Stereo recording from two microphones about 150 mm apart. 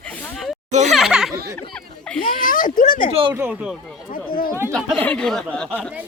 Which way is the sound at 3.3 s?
10° right (ahead or behind).